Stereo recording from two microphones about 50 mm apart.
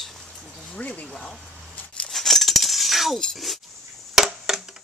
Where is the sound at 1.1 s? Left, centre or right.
Centre.